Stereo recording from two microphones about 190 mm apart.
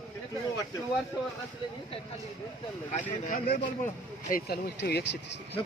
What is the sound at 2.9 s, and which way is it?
Speech, 40° left (ahead or behind).